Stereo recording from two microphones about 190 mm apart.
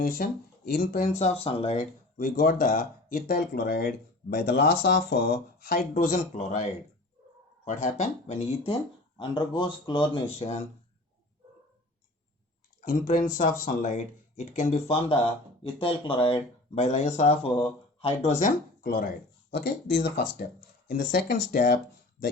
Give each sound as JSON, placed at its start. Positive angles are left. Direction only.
{"t": 0.0, "sound": "speech", "side_deg": 50}
{"t": 9.1, "sound": "speech", "side_deg": 25}
{"t": 12.8, "sound": "speech", "side_deg": 40}